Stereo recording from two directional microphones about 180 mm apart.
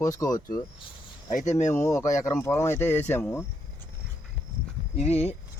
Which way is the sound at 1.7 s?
15° left (ahead or behind).